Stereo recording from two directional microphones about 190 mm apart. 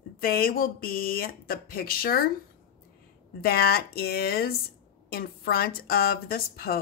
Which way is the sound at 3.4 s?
55° left (ahead or behind).